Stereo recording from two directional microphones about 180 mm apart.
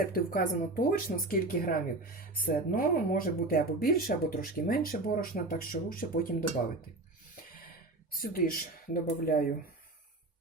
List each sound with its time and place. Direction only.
0.0 s speech: 50° left (ahead or behind)
8.1 s speech: 50° left (ahead or behind)